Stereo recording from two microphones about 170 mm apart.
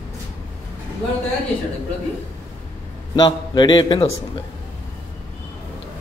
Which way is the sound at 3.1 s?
25° left (ahead or behind).